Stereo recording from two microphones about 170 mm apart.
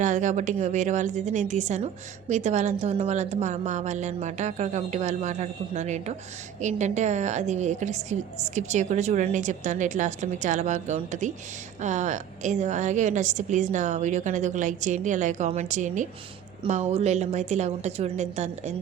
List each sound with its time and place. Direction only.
0.0 s a woman's voice: 45° right (ahead or behind)